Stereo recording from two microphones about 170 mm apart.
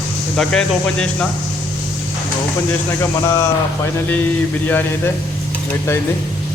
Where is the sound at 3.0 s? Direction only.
20° left (ahead or behind).